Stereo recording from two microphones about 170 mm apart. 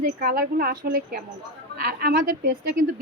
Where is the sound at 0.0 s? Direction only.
60° right (ahead or behind).